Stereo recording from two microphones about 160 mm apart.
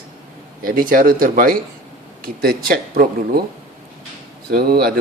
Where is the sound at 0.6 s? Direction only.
60° right (ahead or behind).